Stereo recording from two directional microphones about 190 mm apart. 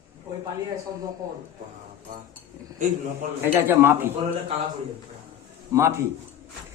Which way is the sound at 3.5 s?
10° right (ahead or behind).